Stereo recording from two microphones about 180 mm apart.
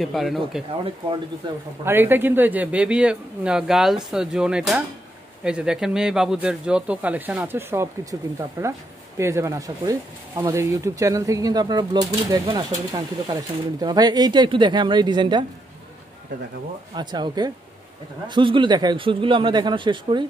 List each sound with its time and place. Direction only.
0.0 s speech: centre (ahead or behind)
1.9 s speech: 10° right (ahead or behind)
16.9 s speech: 25° right (ahead or behind)